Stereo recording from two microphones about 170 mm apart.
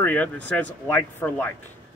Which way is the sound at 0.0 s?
10° left (ahead or behind).